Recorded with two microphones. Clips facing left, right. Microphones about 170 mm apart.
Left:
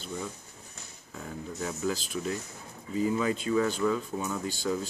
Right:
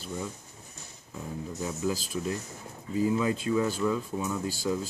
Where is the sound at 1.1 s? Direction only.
10° right (ahead or behind).